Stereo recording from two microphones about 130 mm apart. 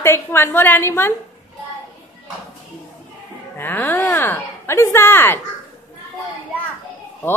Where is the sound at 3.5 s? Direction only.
15° left (ahead or behind).